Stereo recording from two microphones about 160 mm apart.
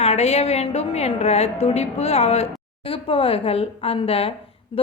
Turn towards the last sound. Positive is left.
turn(degrees=35)  # may be behind; listen again after turning